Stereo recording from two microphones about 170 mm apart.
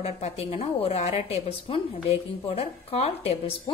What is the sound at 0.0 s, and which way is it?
A woman's voice, 35° left (ahead or behind).